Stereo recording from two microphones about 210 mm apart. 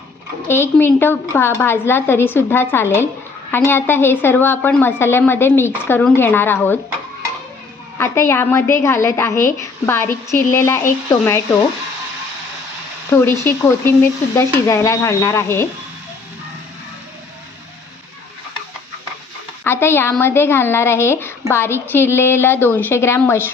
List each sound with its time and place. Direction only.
0.4 s a woman's voice: 10° left (ahead or behind)
7.9 s a woman's voice: 10° left (ahead or behind)
13.1 s a woman's voice: 10° left (ahead or behind)
19.6 s a woman's voice: 10° left (ahead or behind)